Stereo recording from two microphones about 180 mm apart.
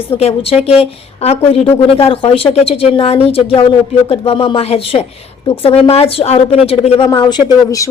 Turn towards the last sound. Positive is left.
turn(degrees=15)  # may be behind; listen again after turning